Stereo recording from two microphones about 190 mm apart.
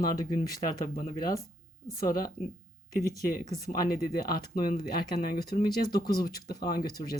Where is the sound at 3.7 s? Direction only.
50° left (ahead or behind).